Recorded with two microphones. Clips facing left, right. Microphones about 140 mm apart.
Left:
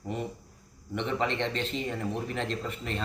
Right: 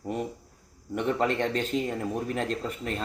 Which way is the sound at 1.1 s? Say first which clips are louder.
Right 4 dB; 45° right (ahead or behind).